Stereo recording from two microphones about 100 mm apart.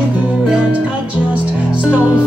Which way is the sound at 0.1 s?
15° right (ahead or behind).